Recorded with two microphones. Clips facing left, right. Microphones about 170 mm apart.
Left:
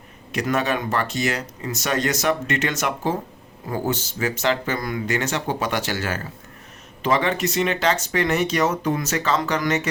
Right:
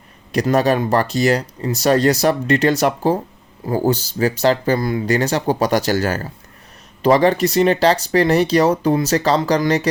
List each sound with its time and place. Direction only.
0.3 s speech: 35° right (ahead or behind)